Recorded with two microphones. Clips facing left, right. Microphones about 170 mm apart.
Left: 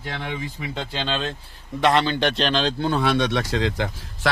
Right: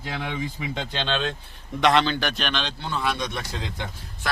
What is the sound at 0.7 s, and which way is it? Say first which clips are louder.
Speech: left 1 dB; 5° left (ahead or behind).